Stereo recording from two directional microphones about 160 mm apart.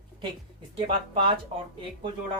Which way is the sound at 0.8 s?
40° right (ahead or behind).